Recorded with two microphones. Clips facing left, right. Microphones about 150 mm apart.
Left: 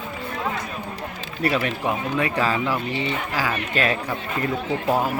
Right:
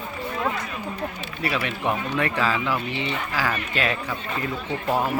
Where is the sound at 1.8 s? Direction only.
15° left (ahead or behind).